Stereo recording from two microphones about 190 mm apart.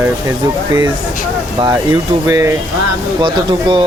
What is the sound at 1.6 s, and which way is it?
Speech, 20° right (ahead or behind).